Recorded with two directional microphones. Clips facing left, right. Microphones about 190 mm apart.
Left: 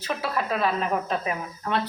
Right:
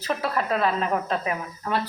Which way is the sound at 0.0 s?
Centre (ahead or behind).